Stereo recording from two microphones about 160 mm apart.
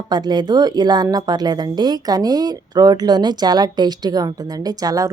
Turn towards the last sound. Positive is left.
turn(degrees=-25)  # may be behind; listen again after turning